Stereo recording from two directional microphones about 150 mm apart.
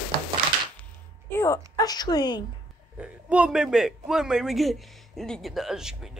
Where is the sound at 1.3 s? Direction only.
20° left (ahead or behind).